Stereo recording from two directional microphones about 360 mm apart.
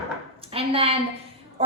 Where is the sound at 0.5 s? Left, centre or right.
Centre.